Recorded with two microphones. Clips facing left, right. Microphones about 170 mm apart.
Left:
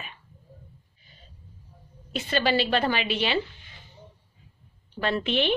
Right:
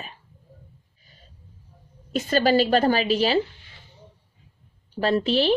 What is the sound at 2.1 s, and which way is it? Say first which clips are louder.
A woman's voice: right 5 dB; 40° right (ahead or behind).